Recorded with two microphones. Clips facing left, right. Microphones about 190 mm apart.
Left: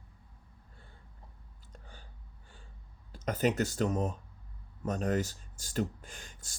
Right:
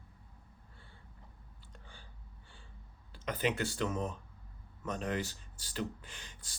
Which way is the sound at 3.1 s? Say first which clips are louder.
Left 5 dB; 45° left (ahead or behind).